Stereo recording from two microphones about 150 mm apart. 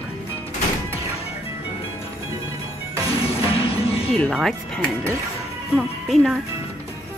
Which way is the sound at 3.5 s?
40° left (ahead or behind).